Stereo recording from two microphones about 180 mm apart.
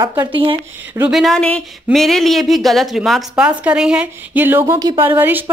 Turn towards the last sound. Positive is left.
turn(degrees=-10)  # may be behind; listen again after turning